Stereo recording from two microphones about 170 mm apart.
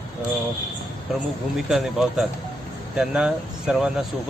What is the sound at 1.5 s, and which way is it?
Speech, centre (ahead or behind).